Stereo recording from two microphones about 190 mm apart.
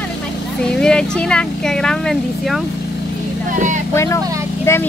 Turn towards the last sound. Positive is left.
turn(degrees=15)  # may be behind; listen again after turning